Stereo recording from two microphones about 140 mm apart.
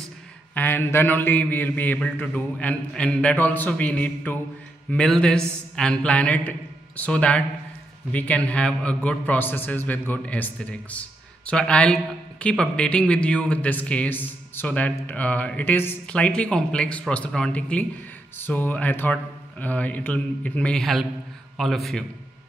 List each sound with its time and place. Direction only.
0.6 s a man's voice: 15° left (ahead or behind)